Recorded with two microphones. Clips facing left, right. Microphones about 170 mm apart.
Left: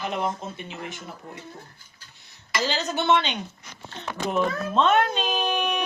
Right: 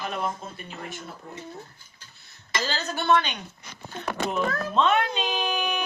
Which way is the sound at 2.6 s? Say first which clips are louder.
Left 2 dB; 20° left (ahead or behind).